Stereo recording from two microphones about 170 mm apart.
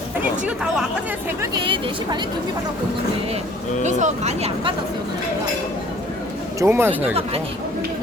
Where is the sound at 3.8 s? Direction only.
45° right (ahead or behind).